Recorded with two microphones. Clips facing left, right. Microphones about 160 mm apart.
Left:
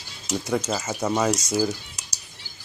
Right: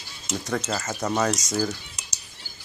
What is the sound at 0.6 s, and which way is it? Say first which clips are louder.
Speech: left 2 dB; 10° left (ahead or behind).